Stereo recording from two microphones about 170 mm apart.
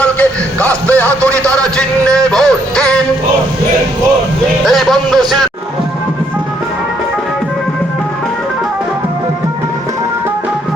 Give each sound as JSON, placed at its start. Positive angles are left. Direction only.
{"t": 0.0, "sound": "music", "side_deg": 5}
{"t": 1.3, "sound": "music", "side_deg": -20}
{"t": 1.7, "sound": "a man's voice", "side_deg": 5}
{"t": 2.3, "sound": "music", "side_deg": 5}
{"t": 4.6, "sound": "a sound", "side_deg": 0}